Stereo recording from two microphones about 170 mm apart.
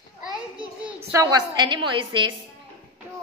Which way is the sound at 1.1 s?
20° right (ahead or behind).